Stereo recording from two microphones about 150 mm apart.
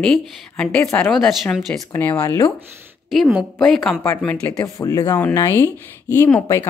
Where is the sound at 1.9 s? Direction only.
10° left (ahead or behind).